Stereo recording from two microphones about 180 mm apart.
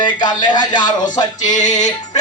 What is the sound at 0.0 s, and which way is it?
Speech, 25° left (ahead or behind).